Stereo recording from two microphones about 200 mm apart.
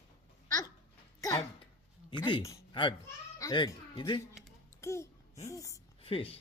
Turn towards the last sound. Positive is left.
turn(degrees=30)  # may be behind; listen again after turning